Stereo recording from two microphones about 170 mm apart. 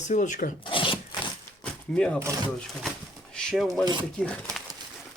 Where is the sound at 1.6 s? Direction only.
5° left (ahead or behind).